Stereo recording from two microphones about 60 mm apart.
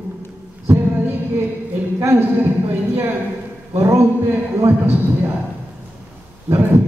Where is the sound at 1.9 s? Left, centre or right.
Right.